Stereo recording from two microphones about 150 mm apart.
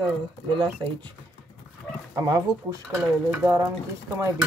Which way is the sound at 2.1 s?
25° right (ahead or behind).